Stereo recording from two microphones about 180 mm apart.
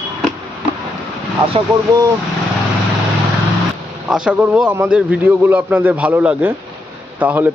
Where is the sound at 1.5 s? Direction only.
20° right (ahead or behind).